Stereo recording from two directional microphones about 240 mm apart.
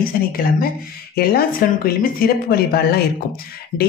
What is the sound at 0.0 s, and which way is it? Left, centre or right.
A woman's voice, left.